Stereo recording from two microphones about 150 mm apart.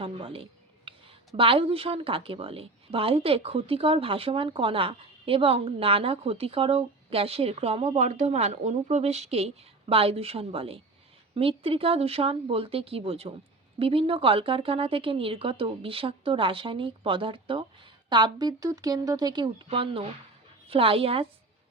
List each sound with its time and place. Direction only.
0.0 s a woman's voice: 35° right (ahead or behind)